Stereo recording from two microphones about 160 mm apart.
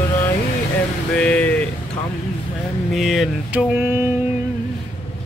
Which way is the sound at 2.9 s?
Centre (ahead or behind).